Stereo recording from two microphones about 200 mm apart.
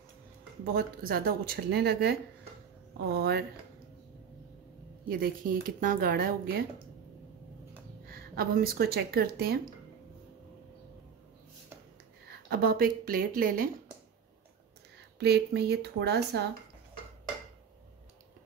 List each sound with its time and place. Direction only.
0.7 s speech: 45° right (ahead or behind)
5.2 s speech: 45° right (ahead or behind)
8.1 s speech: 50° right (ahead or behind)
12.4 s speech: 50° right (ahead or behind)
15.1 s speech: 55° right (ahead or behind)